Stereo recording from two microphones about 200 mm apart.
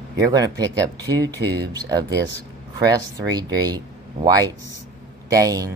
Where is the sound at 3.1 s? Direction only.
20° right (ahead or behind).